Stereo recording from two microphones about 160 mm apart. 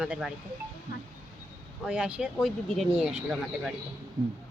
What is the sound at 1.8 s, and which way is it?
Speech, 5° right (ahead or behind).